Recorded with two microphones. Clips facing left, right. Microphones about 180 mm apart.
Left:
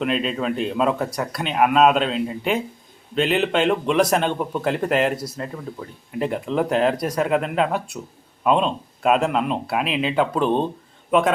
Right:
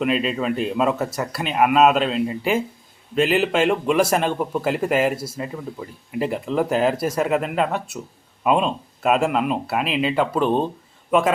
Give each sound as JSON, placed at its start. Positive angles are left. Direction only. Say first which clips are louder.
{"t": 0.0, "sound": "speech", "louder": "right 1 dB", "side_deg": 0}